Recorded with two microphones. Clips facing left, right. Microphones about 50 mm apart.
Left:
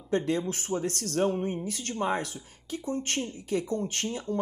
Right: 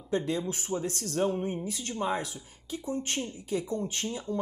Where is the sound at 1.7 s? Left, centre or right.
Left.